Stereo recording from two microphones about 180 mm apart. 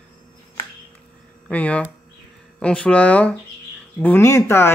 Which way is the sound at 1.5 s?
10° left (ahead or behind).